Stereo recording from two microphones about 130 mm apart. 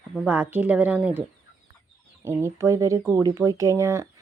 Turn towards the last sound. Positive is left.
turn(degrees=-25)  # may be behind; listen again after turning